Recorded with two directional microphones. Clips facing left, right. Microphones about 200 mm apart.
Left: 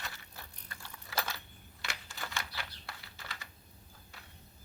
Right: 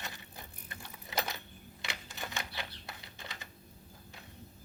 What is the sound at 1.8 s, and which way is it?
Computer keyboard, 20° right (ahead or behind).